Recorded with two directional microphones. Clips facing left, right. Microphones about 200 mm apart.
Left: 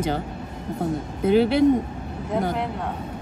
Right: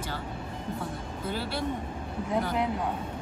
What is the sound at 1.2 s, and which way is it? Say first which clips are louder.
Speech: left 16 dB; 20° left (ahead or behind).